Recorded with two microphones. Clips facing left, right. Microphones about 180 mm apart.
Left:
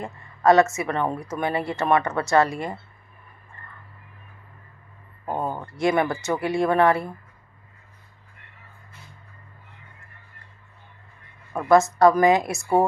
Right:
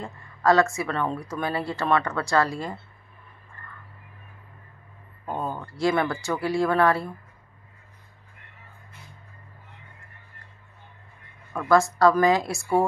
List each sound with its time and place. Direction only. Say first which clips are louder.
0.0 s a woman's voice: left 3 dB; 20° left (ahead or behind)
3.6 s a sound: right 1 dB; 20° left (ahead or behind)
5.2 s speech: left 3 dB; 20° left (ahead or behind)
11.5 s a woman's voice: left 3 dB; 20° left (ahead or behind)